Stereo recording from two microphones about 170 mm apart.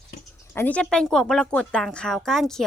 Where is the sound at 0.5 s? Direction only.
10° left (ahead or behind).